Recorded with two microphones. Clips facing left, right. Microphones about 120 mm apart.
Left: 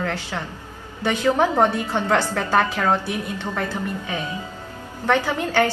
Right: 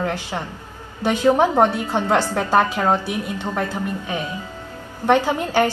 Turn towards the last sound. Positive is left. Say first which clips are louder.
# right 2 dB
turn(degrees=-15)  # may be behind; listen again after turning